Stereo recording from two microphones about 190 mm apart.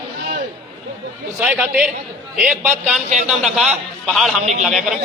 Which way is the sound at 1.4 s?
5° right (ahead or behind).